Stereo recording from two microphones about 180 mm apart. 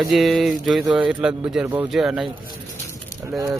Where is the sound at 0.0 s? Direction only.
Centre (ahead or behind).